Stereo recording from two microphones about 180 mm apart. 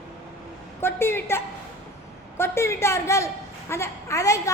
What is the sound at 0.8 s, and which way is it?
A woman's voice, 15° left (ahead or behind).